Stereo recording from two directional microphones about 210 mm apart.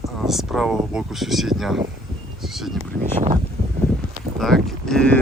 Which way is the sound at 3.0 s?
35° right (ahead or behind).